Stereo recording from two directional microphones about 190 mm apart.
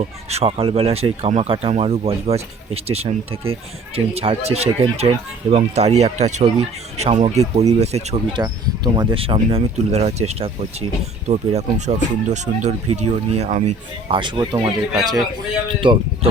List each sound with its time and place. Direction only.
0.0 s speech: 35° right (ahead or behind)
14.1 s speech: 25° right (ahead or behind)
15.8 s speech: 25° right (ahead or behind)